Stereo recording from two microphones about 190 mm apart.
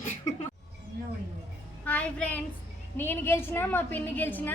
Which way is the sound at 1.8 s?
5° left (ahead or behind).